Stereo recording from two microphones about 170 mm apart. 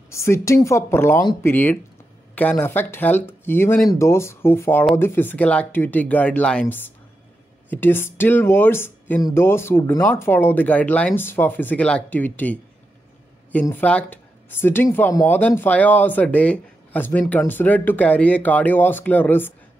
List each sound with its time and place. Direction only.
0.1 s speech: 15° left (ahead or behind)
7.7 s speech: 10° left (ahead or behind)